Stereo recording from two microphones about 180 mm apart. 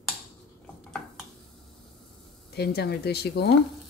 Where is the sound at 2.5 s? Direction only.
65° left (ahead or behind).